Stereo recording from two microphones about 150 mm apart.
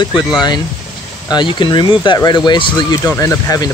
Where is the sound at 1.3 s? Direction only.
30° left (ahead or behind).